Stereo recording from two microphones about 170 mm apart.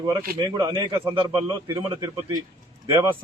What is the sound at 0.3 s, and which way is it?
A man's voice, 25° right (ahead or behind).